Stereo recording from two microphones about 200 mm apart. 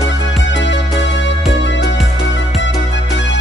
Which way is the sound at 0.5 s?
65° left (ahead or behind).